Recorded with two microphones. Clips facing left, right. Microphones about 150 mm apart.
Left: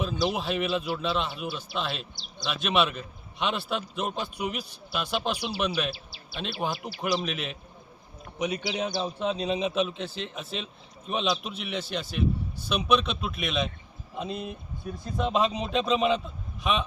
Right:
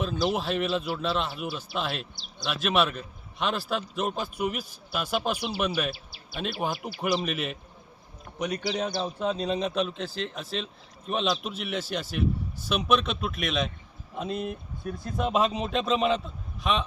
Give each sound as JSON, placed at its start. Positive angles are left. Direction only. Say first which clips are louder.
{"t": 0.0, "sound": "a man's voice", "louder": "right 1 dB", "side_deg": 0}
{"t": 5.9, "sound": "speech", "louder": "right 1 dB", "side_deg": -50}
{"t": 6.8, "sound": "a man's voice", "louder": "right 1 dB", "side_deg": -5}